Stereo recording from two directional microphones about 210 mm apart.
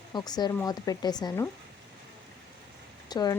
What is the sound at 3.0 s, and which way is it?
Speech, 20° left (ahead or behind).